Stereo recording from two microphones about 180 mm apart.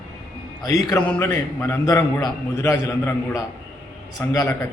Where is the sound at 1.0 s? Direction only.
10° left (ahead or behind).